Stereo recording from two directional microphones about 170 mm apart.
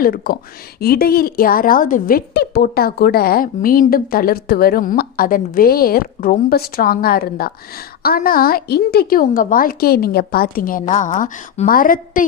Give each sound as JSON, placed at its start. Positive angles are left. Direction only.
{"t": 0.0, "sound": "a woman's voice", "side_deg": 60}